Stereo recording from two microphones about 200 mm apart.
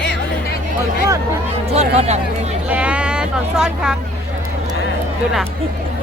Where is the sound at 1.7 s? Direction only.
30° right (ahead or behind).